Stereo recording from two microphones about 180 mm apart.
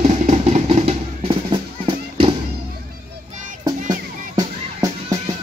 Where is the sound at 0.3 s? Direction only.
40° right (ahead or behind).